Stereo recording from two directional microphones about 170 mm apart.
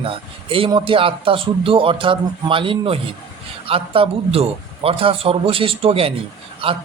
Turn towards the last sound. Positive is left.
turn(degrees=-35)  # may be behind; listen again after turning